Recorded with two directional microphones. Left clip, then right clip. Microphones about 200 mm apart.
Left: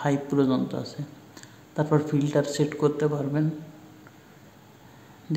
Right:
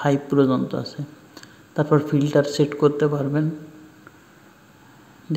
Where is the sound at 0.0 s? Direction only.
15° right (ahead or behind).